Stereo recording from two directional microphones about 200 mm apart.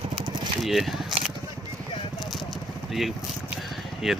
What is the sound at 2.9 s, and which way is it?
Speech, centre (ahead or behind).